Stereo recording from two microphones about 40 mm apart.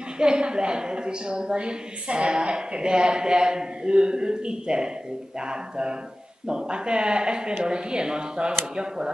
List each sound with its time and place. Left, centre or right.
0.2 s a woman's voice: right